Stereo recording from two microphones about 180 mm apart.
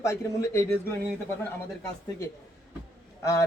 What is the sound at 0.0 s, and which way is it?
Speech, 15° left (ahead or behind).